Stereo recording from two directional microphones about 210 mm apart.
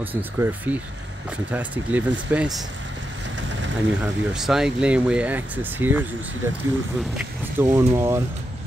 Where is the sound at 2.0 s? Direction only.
60° right (ahead or behind).